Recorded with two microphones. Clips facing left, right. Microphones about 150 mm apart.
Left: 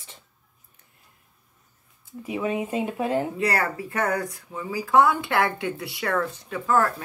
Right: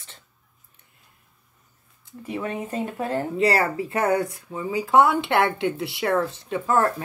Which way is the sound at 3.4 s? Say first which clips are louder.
Right 4 dB; 25° right (ahead or behind).